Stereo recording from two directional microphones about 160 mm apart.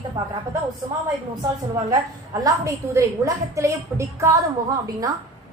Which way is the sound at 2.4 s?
20° right (ahead or behind).